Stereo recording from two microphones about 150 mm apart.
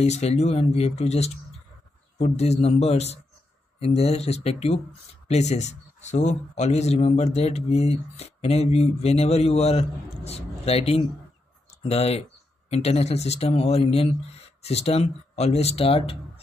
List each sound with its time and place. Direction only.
0.0 s speech: 45° left (ahead or behind)